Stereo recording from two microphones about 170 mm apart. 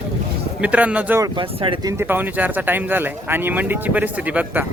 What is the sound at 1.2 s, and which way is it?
Speech, 30° right (ahead or behind).